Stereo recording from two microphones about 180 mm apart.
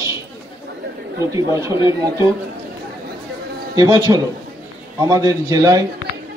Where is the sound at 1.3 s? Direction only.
20° right (ahead or behind).